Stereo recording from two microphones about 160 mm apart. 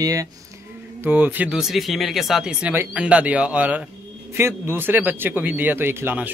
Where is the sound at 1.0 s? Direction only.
10° right (ahead or behind).